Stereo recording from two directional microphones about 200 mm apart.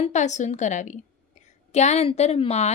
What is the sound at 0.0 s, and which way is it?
A woman's voice, 35° left (ahead or behind).